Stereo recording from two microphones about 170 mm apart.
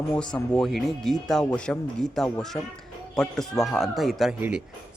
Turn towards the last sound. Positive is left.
turn(degrees=0)  # may be behind; listen again after turning